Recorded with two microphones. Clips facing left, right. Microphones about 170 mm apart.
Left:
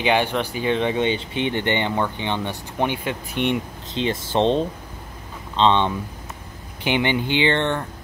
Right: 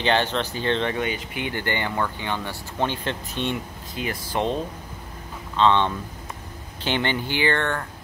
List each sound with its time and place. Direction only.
0.0 s speech: 10° left (ahead or behind)